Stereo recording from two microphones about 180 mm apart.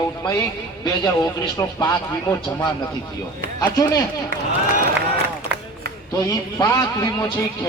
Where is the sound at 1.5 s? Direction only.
20° left (ahead or behind).